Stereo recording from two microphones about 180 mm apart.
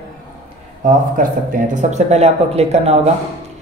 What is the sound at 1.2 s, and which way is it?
Speech, 50° right (ahead or behind).